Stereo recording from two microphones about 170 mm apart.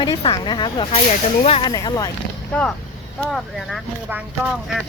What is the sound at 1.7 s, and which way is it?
Speech, 20° left (ahead or behind).